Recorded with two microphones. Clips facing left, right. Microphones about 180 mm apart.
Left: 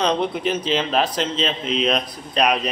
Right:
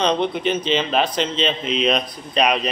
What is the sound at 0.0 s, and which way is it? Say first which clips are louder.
Speech: right 1 dB; 5° left (ahead or behind).